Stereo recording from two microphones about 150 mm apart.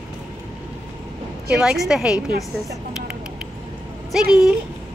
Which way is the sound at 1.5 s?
5° right (ahead or behind).